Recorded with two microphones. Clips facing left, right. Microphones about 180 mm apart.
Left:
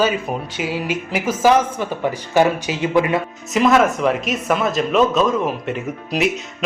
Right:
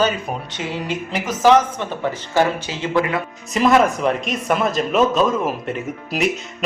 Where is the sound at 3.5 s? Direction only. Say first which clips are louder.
Even; centre (ahead or behind).